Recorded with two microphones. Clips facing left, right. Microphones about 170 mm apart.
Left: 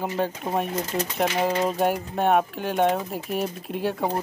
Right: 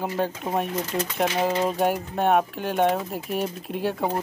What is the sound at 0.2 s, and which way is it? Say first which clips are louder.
Speech: even; centre (ahead or behind).